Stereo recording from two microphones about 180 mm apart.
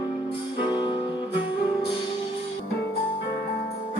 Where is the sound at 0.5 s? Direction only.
25° left (ahead or behind).